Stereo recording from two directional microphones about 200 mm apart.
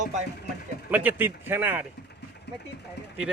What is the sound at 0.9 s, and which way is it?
Speech, 10° right (ahead or behind).